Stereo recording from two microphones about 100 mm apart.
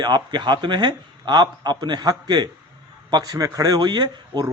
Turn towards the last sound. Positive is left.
turn(degrees=-40)  # may be behind; listen again after turning